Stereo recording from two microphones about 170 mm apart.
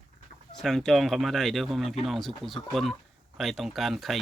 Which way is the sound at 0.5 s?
Centre (ahead or behind).